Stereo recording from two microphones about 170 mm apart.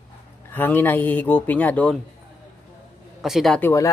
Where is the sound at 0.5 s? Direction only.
10° left (ahead or behind).